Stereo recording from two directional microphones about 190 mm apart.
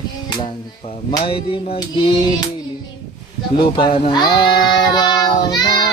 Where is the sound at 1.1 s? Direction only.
25° left (ahead or behind).